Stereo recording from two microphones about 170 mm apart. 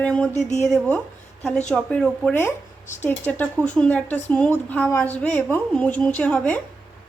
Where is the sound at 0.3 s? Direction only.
40° left (ahead or behind).